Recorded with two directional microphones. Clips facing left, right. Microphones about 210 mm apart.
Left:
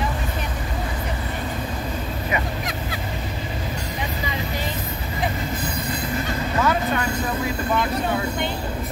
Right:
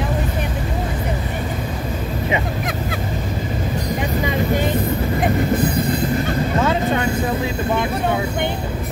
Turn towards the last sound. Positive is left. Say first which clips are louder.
# right 3 dB
turn(degrees=-25)  # may be behind; listen again after turning